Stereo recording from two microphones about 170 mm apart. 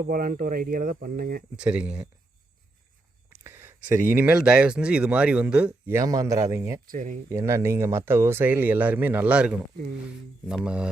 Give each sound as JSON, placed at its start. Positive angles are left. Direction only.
{"t": 0.1, "sound": "speech", "side_deg": -55}
{"t": 1.5, "sound": "speech", "side_deg": -5}
{"t": 3.4, "sound": "speech", "side_deg": -15}
{"t": 6.8, "sound": "speech", "side_deg": -50}
{"t": 7.3, "sound": "speech", "side_deg": -15}